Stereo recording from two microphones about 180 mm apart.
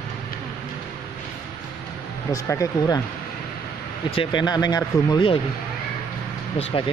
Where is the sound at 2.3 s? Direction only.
15° left (ahead or behind).